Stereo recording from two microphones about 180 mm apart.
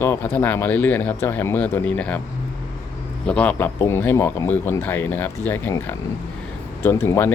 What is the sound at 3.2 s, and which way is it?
Speech, 5° left (ahead or behind).